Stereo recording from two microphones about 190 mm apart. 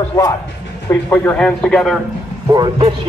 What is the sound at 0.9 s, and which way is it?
Speech, 10° left (ahead or behind).